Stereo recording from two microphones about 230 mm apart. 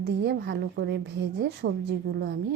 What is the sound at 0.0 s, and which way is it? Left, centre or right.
A woman's voice, right.